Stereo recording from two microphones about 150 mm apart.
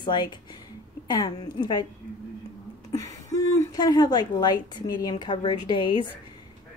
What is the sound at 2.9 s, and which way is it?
A woman's voice, 20° left (ahead or behind).